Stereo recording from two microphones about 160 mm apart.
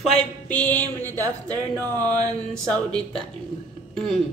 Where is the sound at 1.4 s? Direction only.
20° right (ahead or behind).